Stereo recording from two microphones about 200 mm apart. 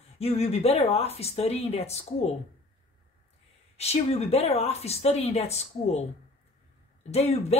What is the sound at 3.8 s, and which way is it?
Speech, 30° left (ahead or behind).